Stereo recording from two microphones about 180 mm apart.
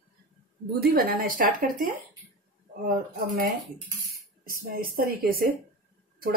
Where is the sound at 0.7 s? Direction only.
60° right (ahead or behind).